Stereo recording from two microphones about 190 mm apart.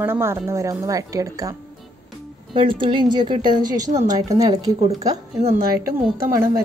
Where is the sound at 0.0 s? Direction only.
15° right (ahead or behind).